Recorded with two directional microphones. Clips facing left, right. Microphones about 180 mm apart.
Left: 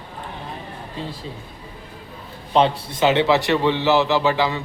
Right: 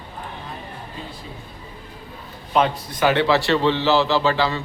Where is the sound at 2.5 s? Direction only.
30° left (ahead or behind).